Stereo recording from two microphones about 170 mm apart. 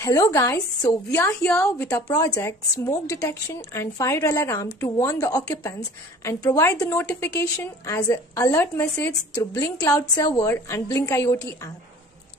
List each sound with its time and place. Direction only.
0.0 s a woman's voice: 20° left (ahead or behind)